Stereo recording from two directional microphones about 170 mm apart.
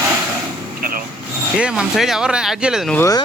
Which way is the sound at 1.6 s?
5° right (ahead or behind).